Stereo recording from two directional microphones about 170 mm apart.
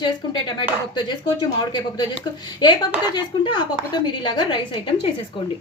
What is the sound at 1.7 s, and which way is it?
Speech, 25° left (ahead or behind).